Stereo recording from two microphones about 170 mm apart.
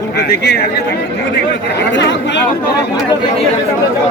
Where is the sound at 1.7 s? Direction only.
90° left.